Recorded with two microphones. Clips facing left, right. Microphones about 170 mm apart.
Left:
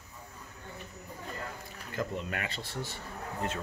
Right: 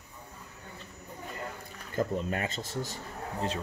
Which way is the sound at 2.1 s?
40° right (ahead or behind).